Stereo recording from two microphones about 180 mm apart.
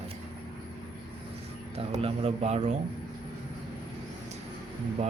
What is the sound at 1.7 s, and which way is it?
Speech, 30° right (ahead or behind).